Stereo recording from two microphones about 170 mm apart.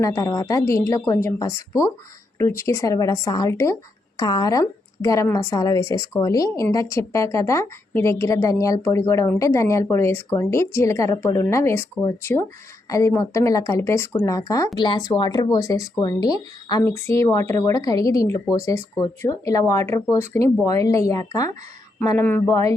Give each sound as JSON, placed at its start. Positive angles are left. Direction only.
{"t": 0.0, "sound": "speech", "side_deg": 20}